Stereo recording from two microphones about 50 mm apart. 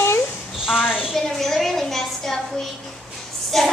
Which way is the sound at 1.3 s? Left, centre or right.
Centre.